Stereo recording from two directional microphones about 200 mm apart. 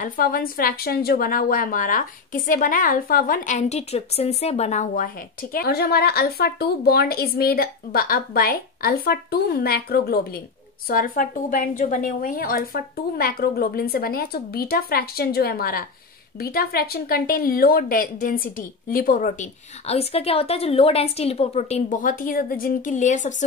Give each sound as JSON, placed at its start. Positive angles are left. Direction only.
{"t": 0.0, "sound": "a woman's voice", "side_deg": 45}